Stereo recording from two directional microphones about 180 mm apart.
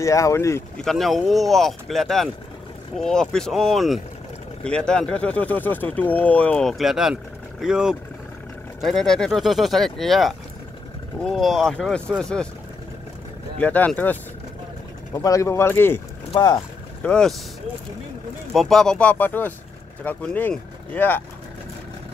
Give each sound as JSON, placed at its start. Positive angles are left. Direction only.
{"t": 0.0, "sound": "speech", "side_deg": 15}
{"t": 0.7, "sound": "speech", "side_deg": 0}
{"t": 13.6, "sound": "speech", "side_deg": 10}
{"t": 15.1, "sound": "speech", "side_deg": 15}
{"t": 16.3, "sound": "speech", "side_deg": 25}
{"t": 17.0, "sound": "speech", "side_deg": 5}
{"t": 18.5, "sound": "speech", "side_deg": 0}